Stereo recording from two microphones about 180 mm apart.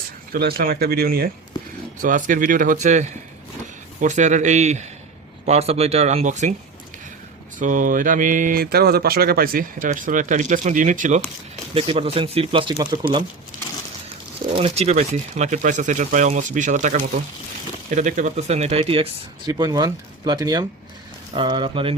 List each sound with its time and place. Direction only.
0.3 s speech: 60° right (ahead or behind)
2.0 s speech: 45° right (ahead or behind)
7.6 s speech: 45° right (ahead or behind)
11.7 s speech: 30° right (ahead or behind)
14.5 s speech: 30° right (ahead or behind)
19.5 s speech: 20° right (ahead or behind)